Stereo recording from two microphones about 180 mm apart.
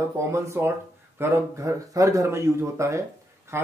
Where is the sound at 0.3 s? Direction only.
15° right (ahead or behind).